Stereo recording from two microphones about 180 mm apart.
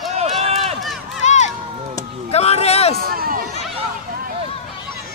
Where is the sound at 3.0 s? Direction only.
55° right (ahead or behind).